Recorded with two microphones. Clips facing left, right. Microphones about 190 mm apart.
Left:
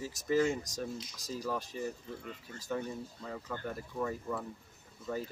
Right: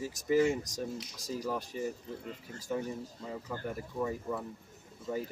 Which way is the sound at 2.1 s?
40° right (ahead or behind).